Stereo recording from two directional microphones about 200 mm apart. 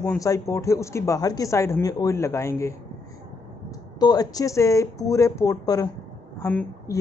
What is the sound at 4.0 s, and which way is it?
A man's voice, 20° left (ahead or behind).